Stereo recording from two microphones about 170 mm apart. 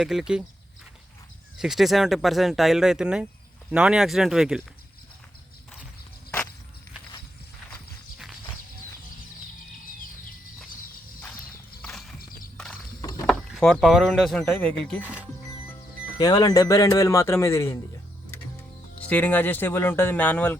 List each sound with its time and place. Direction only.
0.0 s speech: centre (ahead or behind)
1.5 s speech: centre (ahead or behind)
9.6 s a sound: 55° left (ahead or behind)
11.8 s clip-clop: centre (ahead or behind)
12.2 s horse: 55° left (ahead or behind)
12.5 s clip-clop: 5° left (ahead or behind)
13.0 s rowboat: 20° left (ahead or behind)
13.2 s speech: centre (ahead or behind)
15.0 s speech: 10° right (ahead or behind)
16.1 s speech: 20° left (ahead or behind)
18.9 s speech: 10° left (ahead or behind)